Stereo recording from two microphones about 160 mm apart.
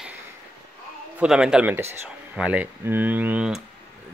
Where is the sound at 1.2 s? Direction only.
5° right (ahead or behind).